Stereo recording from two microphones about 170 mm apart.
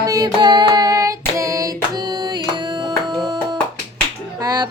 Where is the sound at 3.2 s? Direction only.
25° right (ahead or behind).